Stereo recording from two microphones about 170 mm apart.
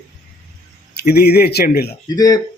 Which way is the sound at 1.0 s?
65° left (ahead or behind).